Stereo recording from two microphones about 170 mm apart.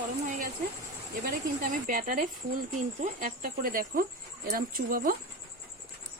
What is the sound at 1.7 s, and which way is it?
Speech, 55° right (ahead or behind).